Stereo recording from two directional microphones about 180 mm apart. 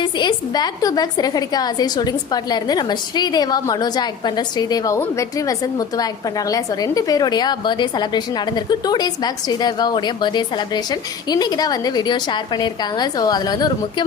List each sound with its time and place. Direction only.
0.0 s a woman's voice: 25° left (ahead or behind)